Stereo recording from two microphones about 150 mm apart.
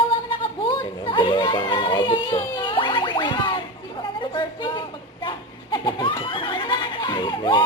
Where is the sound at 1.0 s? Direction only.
35° left (ahead or behind).